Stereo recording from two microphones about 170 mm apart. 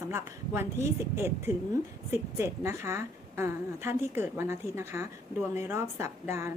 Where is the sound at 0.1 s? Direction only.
15° right (ahead or behind).